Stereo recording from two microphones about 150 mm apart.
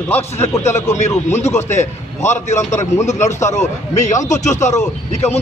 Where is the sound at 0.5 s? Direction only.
20° left (ahead or behind).